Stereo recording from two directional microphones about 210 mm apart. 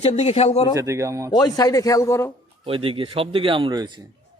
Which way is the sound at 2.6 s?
25° right (ahead or behind).